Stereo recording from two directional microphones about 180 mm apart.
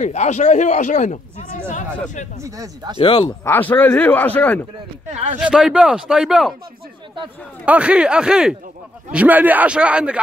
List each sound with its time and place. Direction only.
0.0 s speech: 40° left (ahead or behind)
2.4 s speech: 20° right (ahead or behind)
3.0 s speech: 30° left (ahead or behind)
3.3 s speech: 15° left (ahead or behind)
5.1 s speech: 40° right (ahead or behind)
5.4 s speech: 5° right (ahead or behind)
7.6 s a man's voice: 5° right (ahead or behind)